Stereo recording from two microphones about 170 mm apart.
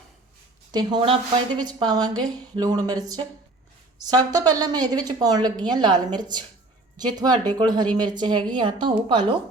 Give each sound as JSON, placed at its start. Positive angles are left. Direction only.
{"t": 0.7, "sound": "a woman's voice", "side_deg": -25}